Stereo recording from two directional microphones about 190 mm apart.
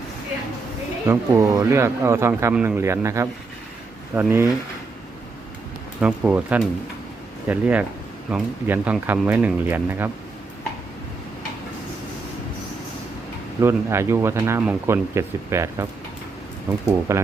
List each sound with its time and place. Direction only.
1.0 s speech: 15° right (ahead or behind)
6.0 s speech: 5° right (ahead or behind)
13.6 s speech: 15° right (ahead or behind)